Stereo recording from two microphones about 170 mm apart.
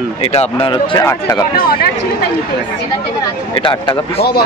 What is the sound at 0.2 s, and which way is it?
Speech, 35° left (ahead or behind).